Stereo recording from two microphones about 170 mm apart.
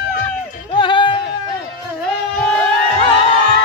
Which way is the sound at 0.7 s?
25° left (ahead or behind).